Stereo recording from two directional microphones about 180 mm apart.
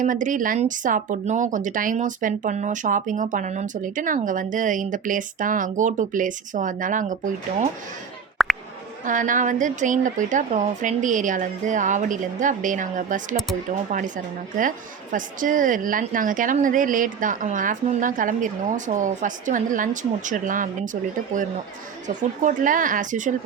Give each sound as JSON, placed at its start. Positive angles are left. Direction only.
{"t": 0.0, "sound": "speech", "side_deg": -45}
{"t": 8.4, "sound": "a sound", "side_deg": 0}
{"t": 9.0, "sound": "speech", "side_deg": -45}
{"t": 15.1, "sound": "speech", "side_deg": -45}